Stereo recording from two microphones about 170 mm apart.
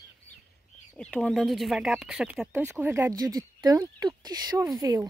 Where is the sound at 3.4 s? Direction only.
25° right (ahead or behind).